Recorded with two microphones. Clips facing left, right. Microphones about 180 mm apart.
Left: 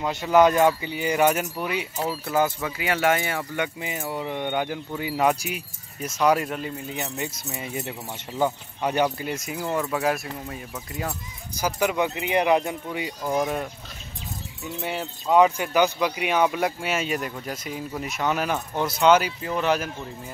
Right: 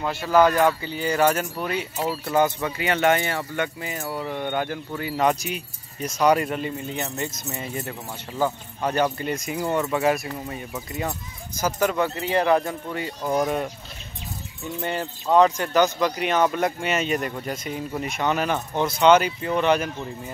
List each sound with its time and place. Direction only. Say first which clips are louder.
0.0 s speech: even; 20° left (ahead or behind); by 11.1 s centre (ahead or behind)
11.5 s speech: right 1 dB; 10° left (ahead or behind)